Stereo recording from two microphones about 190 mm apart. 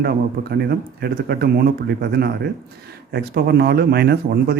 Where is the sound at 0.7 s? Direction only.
55° right (ahead or behind).